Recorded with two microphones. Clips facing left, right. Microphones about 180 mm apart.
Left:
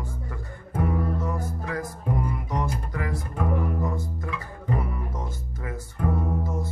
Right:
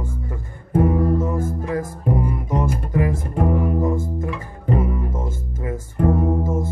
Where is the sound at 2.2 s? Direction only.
20° right (ahead or behind).